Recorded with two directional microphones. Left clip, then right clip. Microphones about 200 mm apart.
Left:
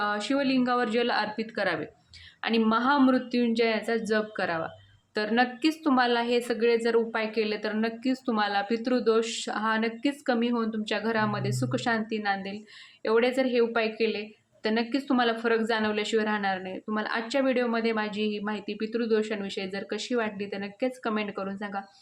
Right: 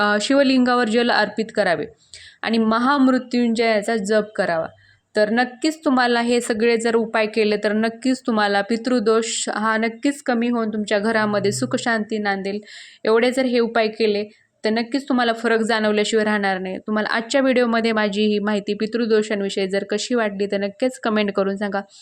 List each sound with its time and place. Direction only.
0.0 s a woman's voice: 45° right (ahead or behind)